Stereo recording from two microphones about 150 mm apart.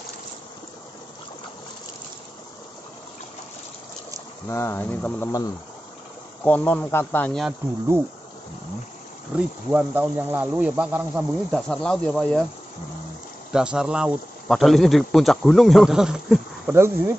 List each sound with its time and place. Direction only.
4.5 s speech: 15° left (ahead or behind)
9.3 s speech: 10° right (ahead or behind)
11.5 s speech: 5° left (ahead or behind)
13.5 s speech: 5° right (ahead or behind)
16.7 s speech: 15° right (ahead or behind)